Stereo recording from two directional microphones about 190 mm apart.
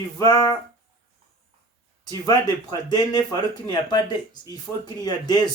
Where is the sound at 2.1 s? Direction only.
20° left (ahead or behind).